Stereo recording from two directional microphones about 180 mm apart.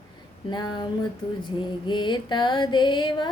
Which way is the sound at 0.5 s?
25° left (ahead or behind).